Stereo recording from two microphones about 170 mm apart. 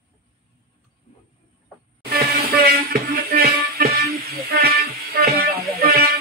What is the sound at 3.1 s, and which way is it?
Music, 60° right (ahead or behind).